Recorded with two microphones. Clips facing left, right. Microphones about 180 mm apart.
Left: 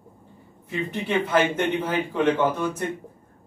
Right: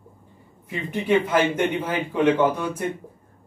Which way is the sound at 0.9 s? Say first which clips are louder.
Right 3 dB; 10° right (ahead or behind).